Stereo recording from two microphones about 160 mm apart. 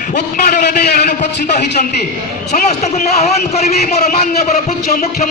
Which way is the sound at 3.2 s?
45° left (ahead or behind).